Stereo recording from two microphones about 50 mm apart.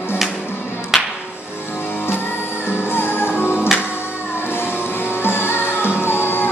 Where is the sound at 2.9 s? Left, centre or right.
Left.